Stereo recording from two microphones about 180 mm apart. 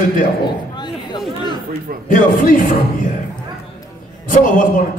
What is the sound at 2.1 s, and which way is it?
Speech, 45° left (ahead or behind).